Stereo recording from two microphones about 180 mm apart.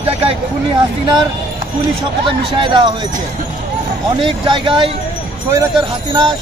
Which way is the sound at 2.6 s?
25° right (ahead or behind).